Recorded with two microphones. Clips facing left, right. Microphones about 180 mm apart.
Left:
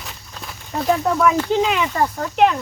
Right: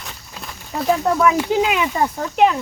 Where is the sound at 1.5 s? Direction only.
5° right (ahead or behind).